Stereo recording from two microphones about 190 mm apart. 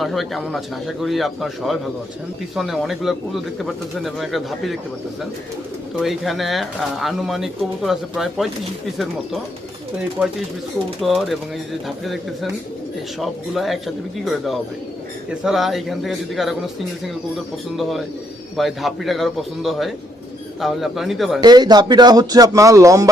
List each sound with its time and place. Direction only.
0.0 s speech: centre (ahead or behind)
6.0 s speech: centre (ahead or behind)
10.2 s speech: 10° right (ahead or behind)
17.7 s speech: centre (ahead or behind)
21.4 s speech: 20° right (ahead or behind)